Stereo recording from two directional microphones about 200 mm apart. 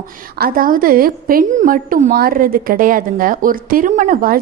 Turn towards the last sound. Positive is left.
turn(degrees=-45)  # may be behind; listen again after turning